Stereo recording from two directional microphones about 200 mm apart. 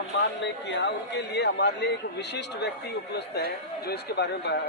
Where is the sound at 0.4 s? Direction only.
60° left (ahead or behind).